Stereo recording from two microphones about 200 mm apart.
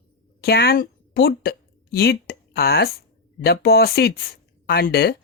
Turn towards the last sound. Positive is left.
turn(degrees=50)  # may be behind; listen again after turning